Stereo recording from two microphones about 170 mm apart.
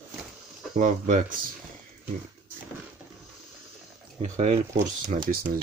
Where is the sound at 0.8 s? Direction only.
50° right (ahead or behind).